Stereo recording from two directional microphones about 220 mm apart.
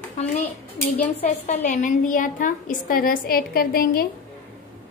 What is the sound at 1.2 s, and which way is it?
A woman's voice, 35° left (ahead or behind).